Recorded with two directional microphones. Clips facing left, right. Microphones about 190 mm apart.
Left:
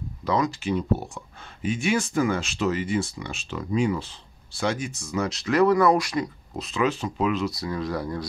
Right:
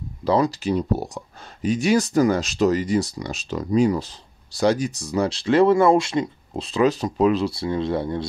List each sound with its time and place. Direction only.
0.2 s speech: 35° right (ahead or behind)